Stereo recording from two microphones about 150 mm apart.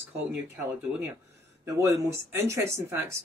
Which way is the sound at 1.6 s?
20° right (ahead or behind).